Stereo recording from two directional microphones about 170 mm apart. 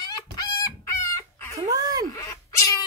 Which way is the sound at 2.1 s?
15° left (ahead or behind).